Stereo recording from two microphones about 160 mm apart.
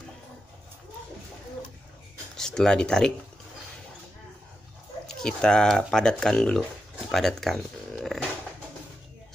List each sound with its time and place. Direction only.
2.3 s speech: 5° left (ahead or behind)
5.0 s speech: 5° left (ahead or behind)
7.1 s a sound: centre (ahead or behind)